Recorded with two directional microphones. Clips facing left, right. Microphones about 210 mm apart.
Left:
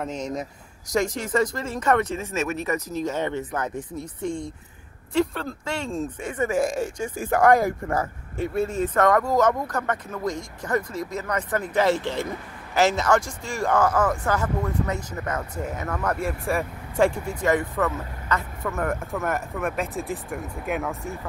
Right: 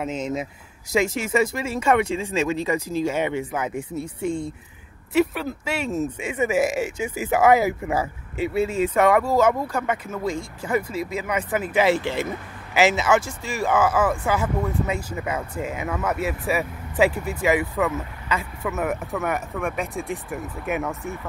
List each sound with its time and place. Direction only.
0.0 s speech: 5° right (ahead or behind)